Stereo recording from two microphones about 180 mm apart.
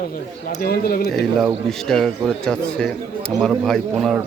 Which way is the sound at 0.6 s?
55° left (ahead or behind).